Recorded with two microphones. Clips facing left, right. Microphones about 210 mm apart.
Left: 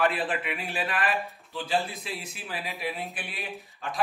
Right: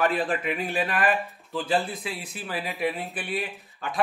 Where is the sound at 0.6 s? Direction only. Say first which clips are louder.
Right 5 dB; 50° right (ahead or behind).